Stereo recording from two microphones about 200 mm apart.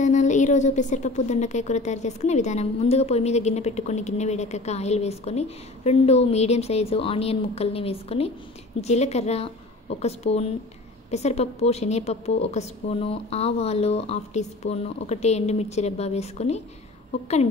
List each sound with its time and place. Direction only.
0.0 s a woman's voice: 35° left (ahead or behind)